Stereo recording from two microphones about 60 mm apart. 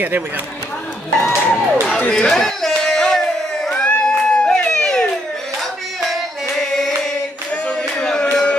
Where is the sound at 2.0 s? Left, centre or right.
Centre.